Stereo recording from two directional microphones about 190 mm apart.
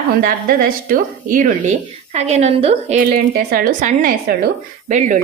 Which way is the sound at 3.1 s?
50° right (ahead or behind).